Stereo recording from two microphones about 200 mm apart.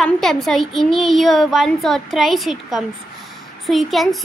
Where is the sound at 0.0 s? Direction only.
Centre (ahead or behind).